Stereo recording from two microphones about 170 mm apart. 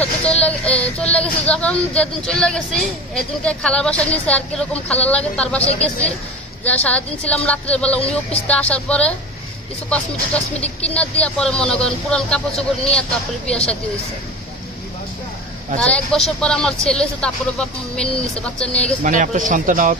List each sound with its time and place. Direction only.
0.4 s child singing: 10° left (ahead or behind)
0.8 s speech: 5° left (ahead or behind)
15.8 s speech: 5° left (ahead or behind)
19.0 s speech: 50° right (ahead or behind)